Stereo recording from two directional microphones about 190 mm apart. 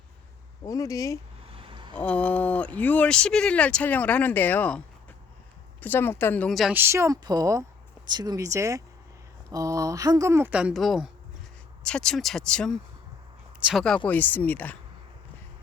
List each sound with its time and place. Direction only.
0.6 s speech: 15° left (ahead or behind)
1.5 s vehicle: 25° right (ahead or behind)
2.0 s speech: 5° left (ahead or behind)
5.8 s speech: 10° left (ahead or behind)
6.7 s speech: 15° right (ahead or behind); by 14.8 s 10° left (ahead or behind)